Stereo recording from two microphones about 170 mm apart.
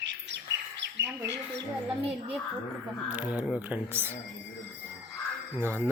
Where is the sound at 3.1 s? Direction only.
10° right (ahead or behind).